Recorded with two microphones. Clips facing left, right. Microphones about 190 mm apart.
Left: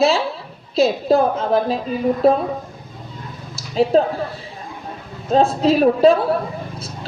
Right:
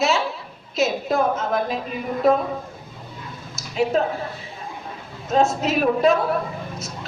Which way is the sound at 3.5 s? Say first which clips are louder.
Left 5 dB; 30° left (ahead or behind).